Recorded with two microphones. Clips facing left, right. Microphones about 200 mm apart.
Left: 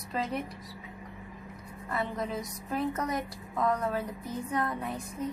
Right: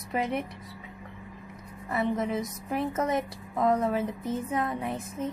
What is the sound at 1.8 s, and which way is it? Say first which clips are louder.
Music: right 5 dB; 20° right (ahead or behind).